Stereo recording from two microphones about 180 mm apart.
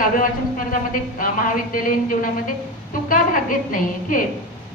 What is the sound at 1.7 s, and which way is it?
A woman's voice, 50° left (ahead or behind).